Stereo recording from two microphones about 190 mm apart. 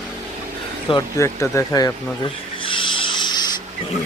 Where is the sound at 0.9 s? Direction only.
15° left (ahead or behind).